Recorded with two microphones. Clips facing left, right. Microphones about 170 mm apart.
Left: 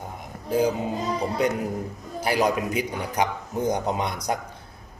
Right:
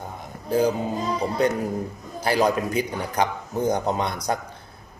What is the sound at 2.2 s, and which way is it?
Speech, 10° left (ahead or behind).